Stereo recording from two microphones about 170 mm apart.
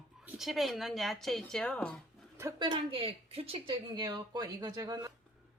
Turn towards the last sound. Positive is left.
turn(degrees=-20)  # may be behind; listen again after turning